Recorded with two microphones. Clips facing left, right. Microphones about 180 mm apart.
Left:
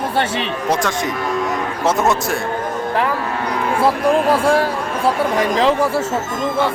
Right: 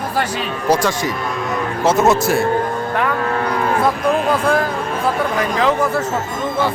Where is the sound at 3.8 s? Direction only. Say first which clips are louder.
Left 4 dB; 30° left (ahead or behind).